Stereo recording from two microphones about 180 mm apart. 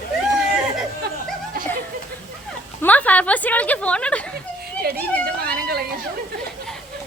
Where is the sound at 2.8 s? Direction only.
10° left (ahead or behind).